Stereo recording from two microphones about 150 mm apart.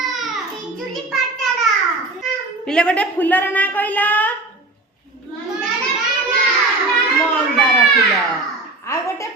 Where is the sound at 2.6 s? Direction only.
5° left (ahead or behind).